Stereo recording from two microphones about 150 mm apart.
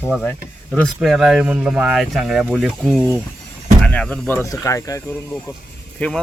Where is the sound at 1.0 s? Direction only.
5° right (ahead or behind).